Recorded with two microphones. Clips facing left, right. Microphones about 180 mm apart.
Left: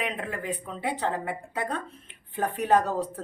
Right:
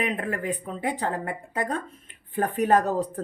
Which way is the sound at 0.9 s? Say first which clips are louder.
Right 1 dB; 45° right (ahead or behind).